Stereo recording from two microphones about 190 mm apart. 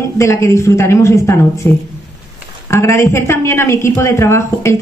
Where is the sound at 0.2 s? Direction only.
15° left (ahead or behind).